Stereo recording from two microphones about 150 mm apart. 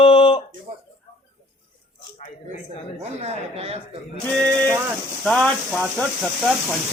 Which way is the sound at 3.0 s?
45° right (ahead or behind).